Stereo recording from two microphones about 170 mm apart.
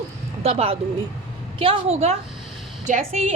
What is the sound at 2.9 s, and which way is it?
Speech, 50° right (ahead or behind).